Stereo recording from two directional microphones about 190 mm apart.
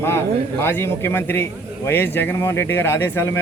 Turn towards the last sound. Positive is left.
turn(degrees=15)  # may be behind; listen again after turning